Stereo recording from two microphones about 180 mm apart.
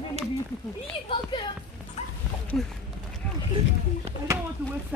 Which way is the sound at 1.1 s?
25° left (ahead or behind).